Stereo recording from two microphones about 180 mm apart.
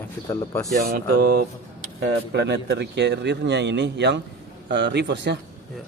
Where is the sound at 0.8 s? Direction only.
55° right (ahead or behind).